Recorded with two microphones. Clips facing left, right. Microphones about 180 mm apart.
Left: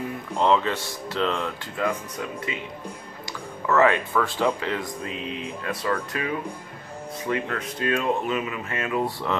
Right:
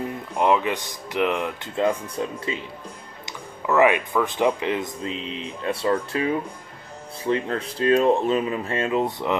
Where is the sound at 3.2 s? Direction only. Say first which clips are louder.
Even; 20° right (ahead or behind).